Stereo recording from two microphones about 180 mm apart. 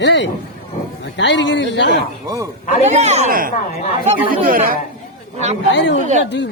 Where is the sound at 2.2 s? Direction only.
20° right (ahead or behind).